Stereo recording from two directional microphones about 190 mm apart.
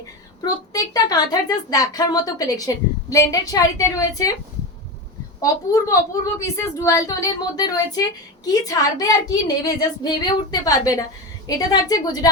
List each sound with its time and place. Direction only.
0.4 s a woman's voice: 20° left (ahead or behind)
5.4 s a woman's voice: 15° left (ahead or behind)